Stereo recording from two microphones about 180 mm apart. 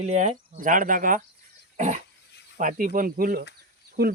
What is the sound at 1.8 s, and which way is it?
Dog, 40° right (ahead or behind).